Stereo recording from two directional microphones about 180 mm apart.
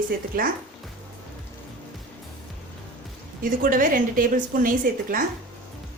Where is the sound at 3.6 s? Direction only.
50° right (ahead or behind).